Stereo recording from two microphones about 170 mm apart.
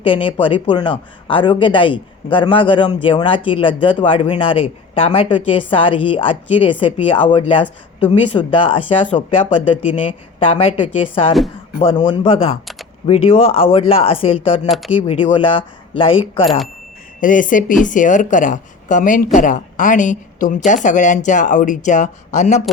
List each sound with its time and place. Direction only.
0.0 s speech: 30° left (ahead or behind)
17.2 s a woman's voice: 50° left (ahead or behind)